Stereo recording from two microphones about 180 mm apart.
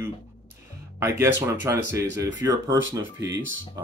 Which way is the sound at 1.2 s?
15° right (ahead or behind).